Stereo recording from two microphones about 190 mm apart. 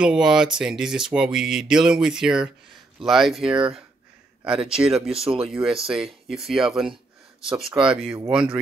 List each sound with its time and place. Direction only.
0.0 s speech: 5° right (ahead or behind)
3.4 s speech: 25° right (ahead or behind)
4.6 s speech: 5° right (ahead or behind)
5.1 s speech: 30° right (ahead or behind)
5.5 s speech: 5° right (ahead or behind)